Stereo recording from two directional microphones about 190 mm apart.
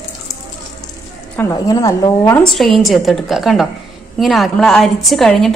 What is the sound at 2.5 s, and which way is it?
A woman's voice, centre (ahead or behind).